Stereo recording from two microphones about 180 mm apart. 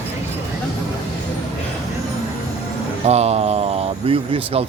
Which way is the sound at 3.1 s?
35° right (ahead or behind).